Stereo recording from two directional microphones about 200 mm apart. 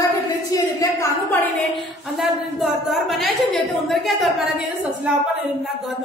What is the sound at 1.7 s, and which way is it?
A woman's voice, centre (ahead or behind).